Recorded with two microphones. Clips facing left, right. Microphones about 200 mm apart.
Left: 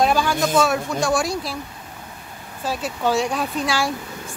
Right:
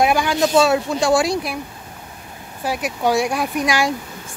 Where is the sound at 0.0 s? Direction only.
15° right (ahead or behind).